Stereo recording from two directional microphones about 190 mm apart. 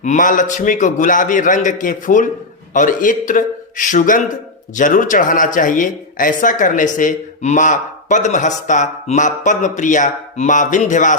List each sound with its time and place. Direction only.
0.0 s a man's voice: 40° left (ahead or behind)